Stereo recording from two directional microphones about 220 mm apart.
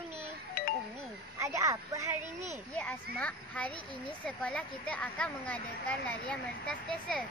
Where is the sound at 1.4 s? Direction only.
15° right (ahead or behind).